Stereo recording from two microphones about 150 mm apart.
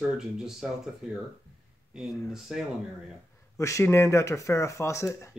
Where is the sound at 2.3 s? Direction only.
Centre (ahead or behind).